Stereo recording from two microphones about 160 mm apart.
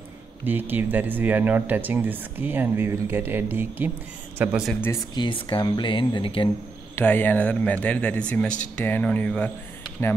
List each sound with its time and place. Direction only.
0.5 s speech: 10° right (ahead or behind)
5.1 s speech: 30° left (ahead or behind)
7.0 s speech: 10° left (ahead or behind)